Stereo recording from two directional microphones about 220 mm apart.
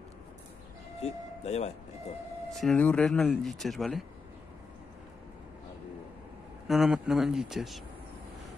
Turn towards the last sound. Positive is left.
turn(degrees=0)  # may be behind; listen again after turning